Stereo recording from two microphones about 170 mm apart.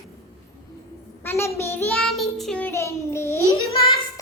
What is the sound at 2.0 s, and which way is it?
Child singing, centre (ahead or behind).